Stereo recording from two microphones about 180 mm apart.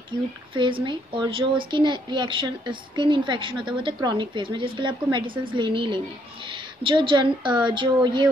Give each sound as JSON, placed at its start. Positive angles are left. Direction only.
{"t": 0.8, "sound": "a woman's voice", "side_deg": -25}